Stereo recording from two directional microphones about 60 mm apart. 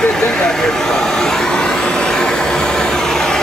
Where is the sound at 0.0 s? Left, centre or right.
Centre.